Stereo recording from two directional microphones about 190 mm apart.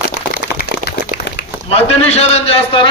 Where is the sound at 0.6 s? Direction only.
60° left (ahead or behind).